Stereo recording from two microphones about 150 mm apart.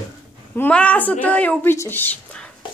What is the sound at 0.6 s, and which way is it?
Speech, 10° left (ahead or behind).